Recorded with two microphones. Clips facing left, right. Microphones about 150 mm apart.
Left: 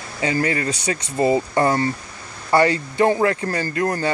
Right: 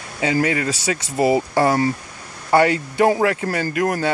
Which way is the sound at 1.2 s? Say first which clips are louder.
Right 1 dB; 10° right (ahead or behind).